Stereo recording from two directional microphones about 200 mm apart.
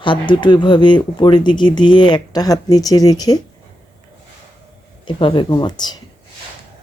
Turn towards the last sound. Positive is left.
turn(degrees=20)  # may be behind; listen again after turning